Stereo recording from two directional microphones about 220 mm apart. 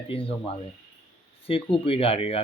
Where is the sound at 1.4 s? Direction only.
25° left (ahead or behind).